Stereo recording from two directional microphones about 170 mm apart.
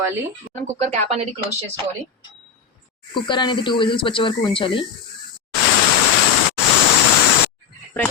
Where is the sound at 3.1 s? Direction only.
25° left (ahead or behind).